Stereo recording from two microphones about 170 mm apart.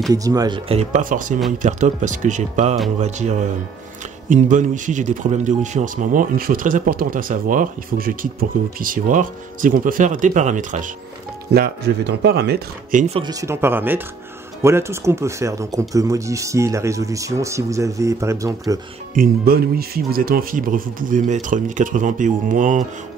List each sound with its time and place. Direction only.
0.1 s speech: 20° right (ahead or behind)
0.7 s speech: 45° right (ahead or behind)
11.5 s speech: 75° right (ahead or behind)
12.9 s speech: 40° right (ahead or behind)
13.2 s speech: 20° right (ahead or behind)
19.1 s speech: 60° right (ahead or behind)